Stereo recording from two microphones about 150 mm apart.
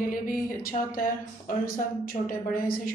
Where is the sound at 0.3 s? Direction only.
70° left (ahead or behind).